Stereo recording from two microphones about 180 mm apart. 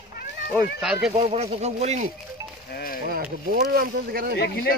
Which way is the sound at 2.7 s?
55° left (ahead or behind).